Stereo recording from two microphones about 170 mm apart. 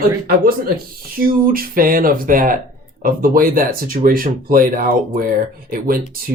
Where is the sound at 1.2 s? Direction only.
60° right (ahead or behind).